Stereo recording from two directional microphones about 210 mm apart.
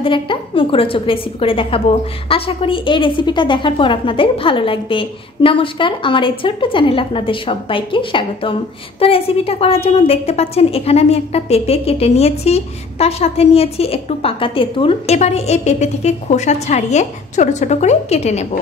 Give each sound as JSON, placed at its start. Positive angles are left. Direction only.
{"t": 0.0, "sound": "a woman's voice", "side_deg": 25}